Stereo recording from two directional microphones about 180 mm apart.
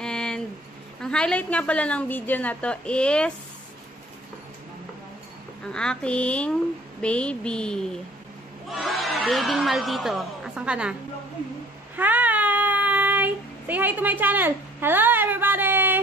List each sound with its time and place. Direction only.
0.0 s a sound: 5° left (ahead or behind)
1.0 s a woman's voice: 5° left (ahead or behind)
5.7 s a woman's voice: 5° left (ahead or behind)
7.0 s a sound: 5° left (ahead or behind)
8.6 s speech: centre (ahead or behind)
12.0 s child singing: 10° right (ahead or behind)